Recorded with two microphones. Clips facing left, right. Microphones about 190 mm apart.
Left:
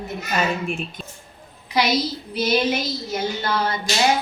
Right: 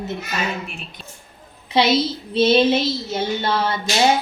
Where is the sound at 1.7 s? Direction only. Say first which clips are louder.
Right 3 dB; 25° right (ahead or behind).